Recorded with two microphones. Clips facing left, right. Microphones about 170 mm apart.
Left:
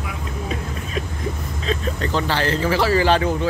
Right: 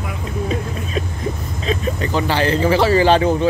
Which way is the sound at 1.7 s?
10° right (ahead or behind).